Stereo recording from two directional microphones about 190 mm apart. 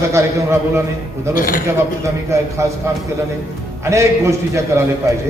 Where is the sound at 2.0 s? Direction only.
15° right (ahead or behind).